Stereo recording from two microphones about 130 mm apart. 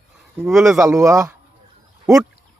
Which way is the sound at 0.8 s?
25° right (ahead or behind).